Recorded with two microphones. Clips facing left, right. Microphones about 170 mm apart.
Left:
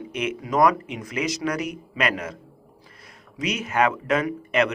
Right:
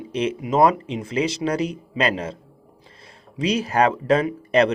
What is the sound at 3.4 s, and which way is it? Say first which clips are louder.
Speech: right 3 dB; 30° right (ahead or behind).